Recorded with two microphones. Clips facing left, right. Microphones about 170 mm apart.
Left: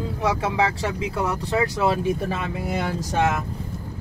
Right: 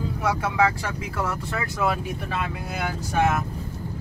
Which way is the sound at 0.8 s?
20° left (ahead or behind).